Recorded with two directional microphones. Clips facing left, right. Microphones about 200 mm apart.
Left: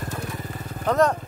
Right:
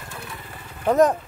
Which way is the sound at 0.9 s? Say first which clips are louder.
Right 3 dB; 15° right (ahead or behind).